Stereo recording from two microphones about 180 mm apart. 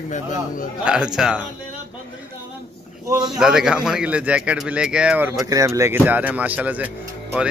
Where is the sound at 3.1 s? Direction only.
20° right (ahead or behind).